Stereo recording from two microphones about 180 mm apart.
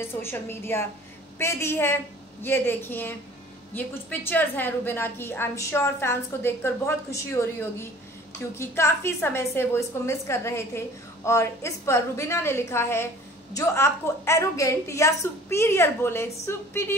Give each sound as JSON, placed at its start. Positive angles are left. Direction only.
{"t": 0.1, "sound": "a woman's voice", "side_deg": 15}